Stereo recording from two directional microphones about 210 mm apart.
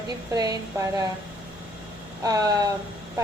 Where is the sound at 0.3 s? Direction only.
20° right (ahead or behind).